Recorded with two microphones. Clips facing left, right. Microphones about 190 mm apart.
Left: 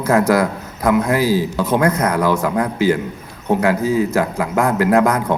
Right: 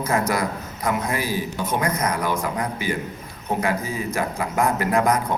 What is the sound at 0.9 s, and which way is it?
A man's voice, 90° left.